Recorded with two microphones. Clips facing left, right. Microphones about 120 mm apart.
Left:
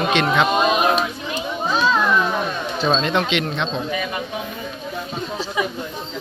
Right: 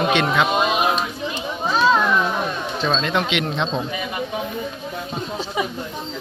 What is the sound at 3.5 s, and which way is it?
Speech, 30° right (ahead or behind).